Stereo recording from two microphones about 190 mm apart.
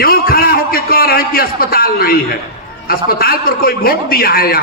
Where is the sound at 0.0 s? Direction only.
50° left (ahead or behind).